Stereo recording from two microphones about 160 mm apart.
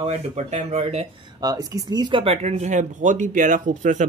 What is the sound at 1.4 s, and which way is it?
Speech, 25° right (ahead or behind).